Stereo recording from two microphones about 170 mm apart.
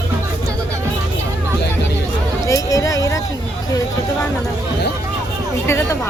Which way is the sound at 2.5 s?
20° left (ahead or behind).